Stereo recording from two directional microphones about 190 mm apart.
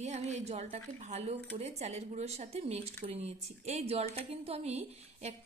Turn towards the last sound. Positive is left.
turn(degrees=-35)  # may be behind; listen again after turning